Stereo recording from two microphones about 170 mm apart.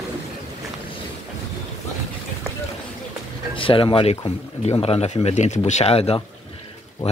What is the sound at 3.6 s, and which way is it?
Speech, 30° left (ahead or behind).